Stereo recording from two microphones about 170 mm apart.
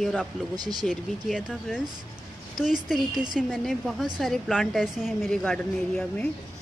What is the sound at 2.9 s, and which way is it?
A woman's voice, 5° right (ahead or behind).